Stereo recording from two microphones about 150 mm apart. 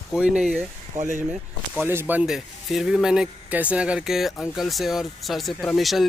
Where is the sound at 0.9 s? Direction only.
60° right (ahead or behind).